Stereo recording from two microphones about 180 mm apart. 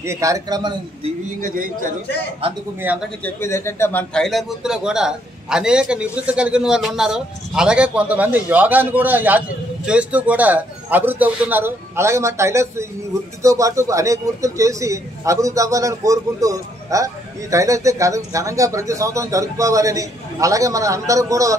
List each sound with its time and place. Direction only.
0.0 s a man's voice: 15° right (ahead or behind)
1.4 s a man's voice: 50° right (ahead or behind)
3.2 s a man's voice: 10° left (ahead or behind); by 21.5 s 20° right (ahead or behind)